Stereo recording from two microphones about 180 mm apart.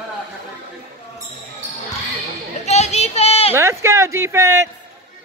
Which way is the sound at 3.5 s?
15° right (ahead or behind).